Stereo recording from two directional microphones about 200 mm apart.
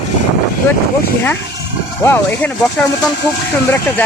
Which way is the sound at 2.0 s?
15° left (ahead or behind).